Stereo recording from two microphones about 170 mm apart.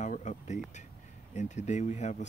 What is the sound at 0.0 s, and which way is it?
Speech, 45° left (ahead or behind).